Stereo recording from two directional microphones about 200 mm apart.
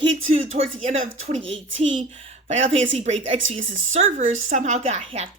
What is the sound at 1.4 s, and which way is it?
Speech, 70° right (ahead or behind).